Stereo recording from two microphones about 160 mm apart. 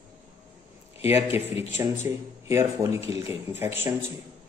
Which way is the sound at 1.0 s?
15° right (ahead or behind).